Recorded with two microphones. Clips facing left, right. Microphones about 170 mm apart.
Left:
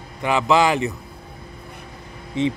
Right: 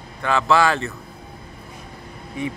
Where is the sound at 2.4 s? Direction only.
25° left (ahead or behind).